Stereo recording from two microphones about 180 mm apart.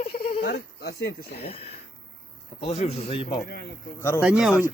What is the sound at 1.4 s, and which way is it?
Speech, 35° left (ahead or behind).